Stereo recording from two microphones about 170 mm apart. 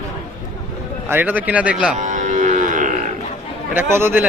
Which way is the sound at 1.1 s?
10° right (ahead or behind).